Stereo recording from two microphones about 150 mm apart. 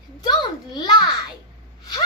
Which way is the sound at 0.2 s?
30° left (ahead or behind).